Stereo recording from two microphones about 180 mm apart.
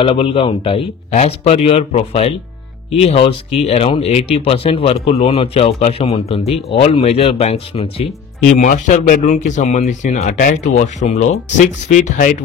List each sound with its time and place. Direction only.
0.0 s speech: 30° left (ahead or behind)